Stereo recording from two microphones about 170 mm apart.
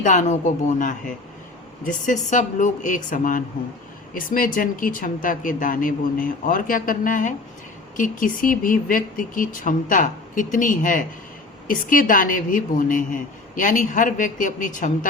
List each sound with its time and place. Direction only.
0.0 s speech: 45° left (ahead or behind)